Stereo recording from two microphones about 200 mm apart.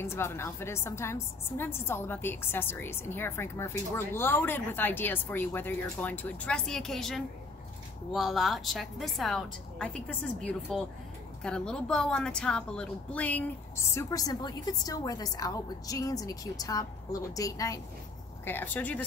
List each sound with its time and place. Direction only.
0.0 s a woman's voice: 15° left (ahead or behind)